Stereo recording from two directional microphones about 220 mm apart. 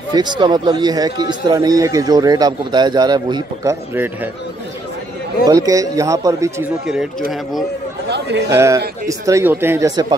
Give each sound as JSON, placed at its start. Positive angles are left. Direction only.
{"t": 0.1, "sound": "speech", "side_deg": -20}
{"t": 5.5, "sound": "speech", "side_deg": -15}
{"t": 8.1, "sound": "speech", "side_deg": -50}
{"t": 8.5, "sound": "speech", "side_deg": -15}